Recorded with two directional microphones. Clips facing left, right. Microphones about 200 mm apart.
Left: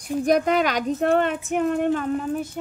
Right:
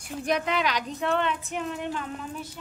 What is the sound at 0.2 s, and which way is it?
Speech, 45° left (ahead or behind).